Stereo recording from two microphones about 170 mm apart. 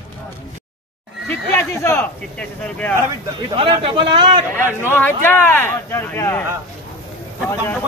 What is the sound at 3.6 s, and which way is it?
Speech, 35° right (ahead or behind).